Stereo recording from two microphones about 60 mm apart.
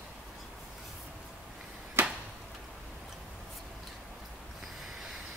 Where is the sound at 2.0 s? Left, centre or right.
Right.